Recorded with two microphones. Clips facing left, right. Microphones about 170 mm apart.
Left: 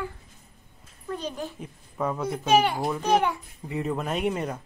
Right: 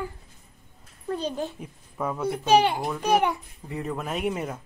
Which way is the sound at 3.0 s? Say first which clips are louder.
Right 1 dB; 10° right (ahead or behind).